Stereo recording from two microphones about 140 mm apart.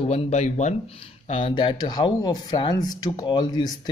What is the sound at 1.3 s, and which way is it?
Speech, 40° left (ahead or behind).